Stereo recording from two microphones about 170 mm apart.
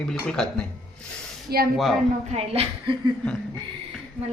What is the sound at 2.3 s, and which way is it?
Speech, 35° right (ahead or behind).